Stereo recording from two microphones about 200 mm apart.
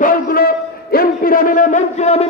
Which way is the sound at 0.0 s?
45° left (ahead or behind).